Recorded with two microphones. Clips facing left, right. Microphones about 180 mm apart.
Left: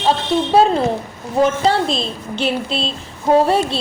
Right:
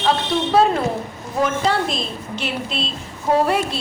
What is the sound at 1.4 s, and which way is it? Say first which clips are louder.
A woman's voice: left 4 dB; 30° left (ahead or behind).